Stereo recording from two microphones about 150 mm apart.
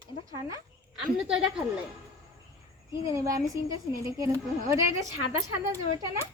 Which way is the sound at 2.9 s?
20° right (ahead or behind).